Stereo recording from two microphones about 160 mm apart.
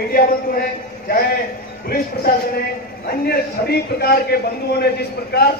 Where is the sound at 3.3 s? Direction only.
75° left (ahead or behind).